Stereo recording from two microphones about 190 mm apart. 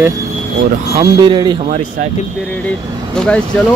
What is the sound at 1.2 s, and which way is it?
Speech, 25° right (ahead or behind).